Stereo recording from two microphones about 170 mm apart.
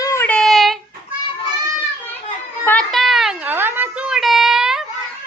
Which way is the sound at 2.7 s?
5° left (ahead or behind).